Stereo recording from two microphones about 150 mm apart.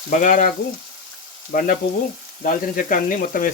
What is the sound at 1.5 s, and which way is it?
Speech, 60° left (ahead or behind).